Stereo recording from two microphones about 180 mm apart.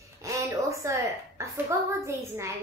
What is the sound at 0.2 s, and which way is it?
A woman's voice, 15° right (ahead or behind).